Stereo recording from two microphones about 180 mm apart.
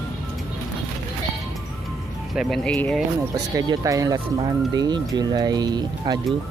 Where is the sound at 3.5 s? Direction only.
20° right (ahead or behind).